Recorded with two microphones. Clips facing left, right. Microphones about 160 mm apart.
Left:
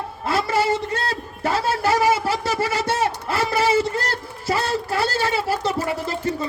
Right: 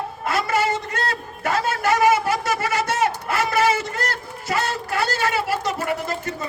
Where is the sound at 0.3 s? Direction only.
30° left (ahead or behind).